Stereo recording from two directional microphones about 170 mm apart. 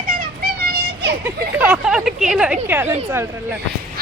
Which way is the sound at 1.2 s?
10° right (ahead or behind).